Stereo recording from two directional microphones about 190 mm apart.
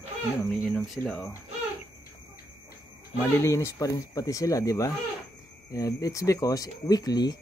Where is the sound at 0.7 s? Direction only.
Centre (ahead or behind).